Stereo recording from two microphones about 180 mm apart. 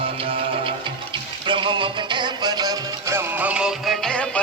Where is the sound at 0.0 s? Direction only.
30° right (ahead or behind).